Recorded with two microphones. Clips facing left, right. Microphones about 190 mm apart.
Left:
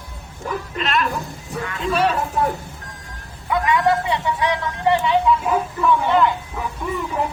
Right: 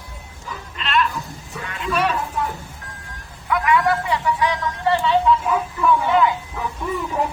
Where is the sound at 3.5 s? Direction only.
25° left (ahead or behind).